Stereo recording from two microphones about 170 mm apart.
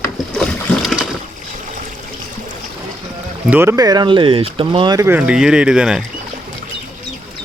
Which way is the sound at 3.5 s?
15° right (ahead or behind).